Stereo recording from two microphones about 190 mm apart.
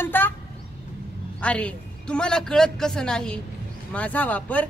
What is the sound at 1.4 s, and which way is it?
A man's voice, 5° left (ahead or behind).